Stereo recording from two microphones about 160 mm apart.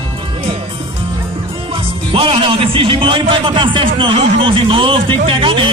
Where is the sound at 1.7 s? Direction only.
35° right (ahead or behind).